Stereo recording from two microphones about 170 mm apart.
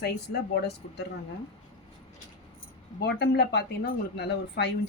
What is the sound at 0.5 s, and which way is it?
Speech, 80° left.